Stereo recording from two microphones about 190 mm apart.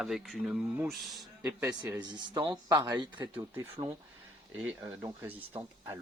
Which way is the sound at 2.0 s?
20° right (ahead or behind).